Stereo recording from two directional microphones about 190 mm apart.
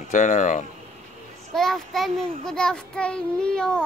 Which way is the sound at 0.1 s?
40° left (ahead or behind).